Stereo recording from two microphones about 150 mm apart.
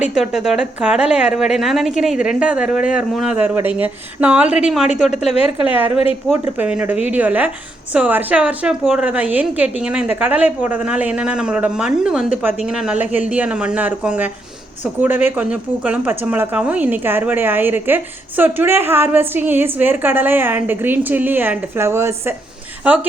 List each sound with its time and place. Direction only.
0.0 s a woman's voice: 5° right (ahead or behind)
5.1 s a woman's voice: 45° left (ahead or behind)
6.6 s speech: 10° right (ahead or behind)